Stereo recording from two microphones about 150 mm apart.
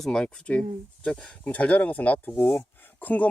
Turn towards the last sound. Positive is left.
turn(degrees=10)  # may be behind; listen again after turning